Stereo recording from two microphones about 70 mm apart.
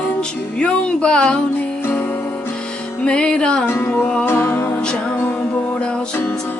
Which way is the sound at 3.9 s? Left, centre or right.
Centre.